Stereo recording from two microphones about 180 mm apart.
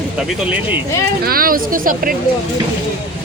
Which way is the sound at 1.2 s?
55° right (ahead or behind).